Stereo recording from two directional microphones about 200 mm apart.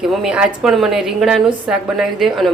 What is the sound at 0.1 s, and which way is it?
A woman's voice, 5° right (ahead or behind).